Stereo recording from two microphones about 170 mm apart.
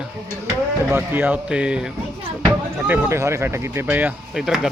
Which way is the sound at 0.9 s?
10° right (ahead or behind).